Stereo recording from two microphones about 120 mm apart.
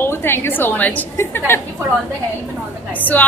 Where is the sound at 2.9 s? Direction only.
15° left (ahead or behind).